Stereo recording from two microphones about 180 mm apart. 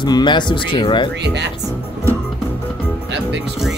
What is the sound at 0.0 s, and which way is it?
Speech, 25° left (ahead or behind).